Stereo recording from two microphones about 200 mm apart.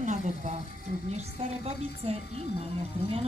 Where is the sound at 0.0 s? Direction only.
35° right (ahead or behind).